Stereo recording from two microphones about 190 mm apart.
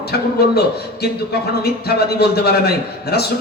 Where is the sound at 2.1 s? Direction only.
60° left (ahead or behind).